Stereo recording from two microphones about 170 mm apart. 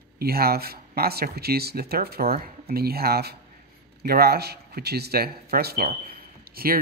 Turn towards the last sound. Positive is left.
turn(degrees=-60)  # may be behind; listen again after turning